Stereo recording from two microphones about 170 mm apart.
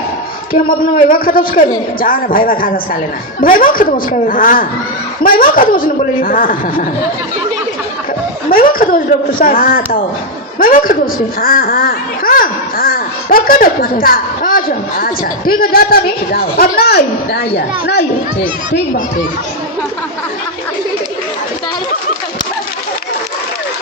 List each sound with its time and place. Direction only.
1.1 s a child's voice: 55° left (ahead or behind)
8.4 s chuckle: 55° left (ahead or behind)
9.4 s a child's voice: 55° left (ahead or behind); by 18.0 s 80° left